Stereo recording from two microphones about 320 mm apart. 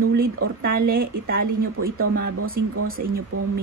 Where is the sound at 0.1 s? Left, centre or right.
Right.